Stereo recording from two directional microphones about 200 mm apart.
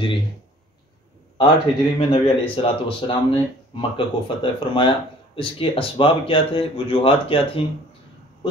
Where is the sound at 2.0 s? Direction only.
25° left (ahead or behind).